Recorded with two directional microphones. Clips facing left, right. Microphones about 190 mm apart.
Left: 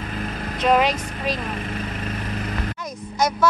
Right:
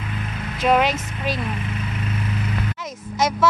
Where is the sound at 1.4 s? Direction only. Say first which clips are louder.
Even; 40° left (ahead or behind).